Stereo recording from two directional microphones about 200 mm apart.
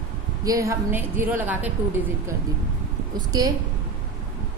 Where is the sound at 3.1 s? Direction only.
20° right (ahead or behind).